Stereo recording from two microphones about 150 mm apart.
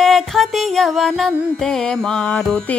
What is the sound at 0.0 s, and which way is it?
Music, centre (ahead or behind).